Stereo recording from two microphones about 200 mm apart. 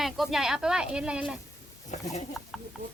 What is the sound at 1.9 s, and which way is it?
Speech, 35° left (ahead or behind).